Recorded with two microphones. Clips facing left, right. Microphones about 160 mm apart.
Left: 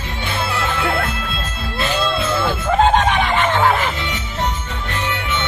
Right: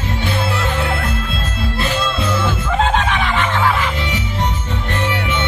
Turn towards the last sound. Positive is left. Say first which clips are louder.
# left 1 dB
turn(degrees=40)  # may be behind; listen again after turning